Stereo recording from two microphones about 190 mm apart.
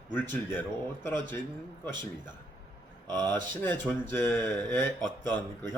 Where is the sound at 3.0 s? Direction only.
20° right (ahead or behind).